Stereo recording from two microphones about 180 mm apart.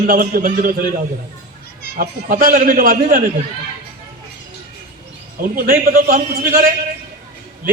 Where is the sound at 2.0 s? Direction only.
50° right (ahead or behind).